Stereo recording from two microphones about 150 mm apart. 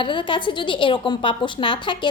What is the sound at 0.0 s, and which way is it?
A woman's voice, 35° left (ahead or behind).